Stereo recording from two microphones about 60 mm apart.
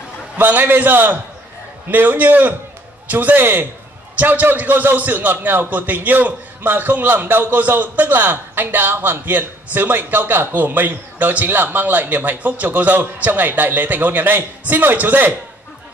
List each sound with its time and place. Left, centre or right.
0.4 s a man's voice: right